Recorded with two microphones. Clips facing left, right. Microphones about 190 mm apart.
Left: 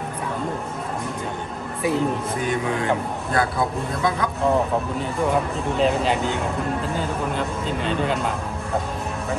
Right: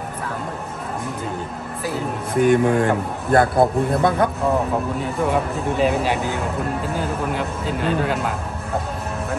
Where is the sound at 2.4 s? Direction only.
55° right (ahead or behind).